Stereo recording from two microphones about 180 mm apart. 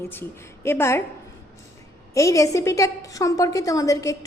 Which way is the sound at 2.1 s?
15° left (ahead or behind).